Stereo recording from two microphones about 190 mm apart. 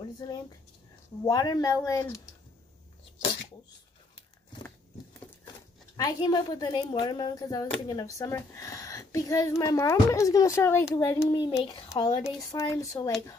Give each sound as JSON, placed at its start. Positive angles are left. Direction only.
{"t": 1.2, "sound": "speech", "side_deg": 20}
{"t": 5.9, "sound": "a woman's voice", "side_deg": 20}
{"t": 11.3, "sound": "a woman's voice", "side_deg": 25}